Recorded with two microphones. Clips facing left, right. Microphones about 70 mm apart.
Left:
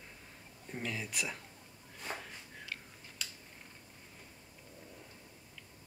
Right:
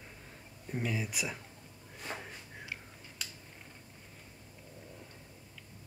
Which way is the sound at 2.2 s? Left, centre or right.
Centre.